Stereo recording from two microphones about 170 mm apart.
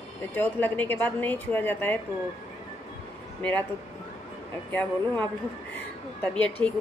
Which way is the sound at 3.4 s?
5° left (ahead or behind).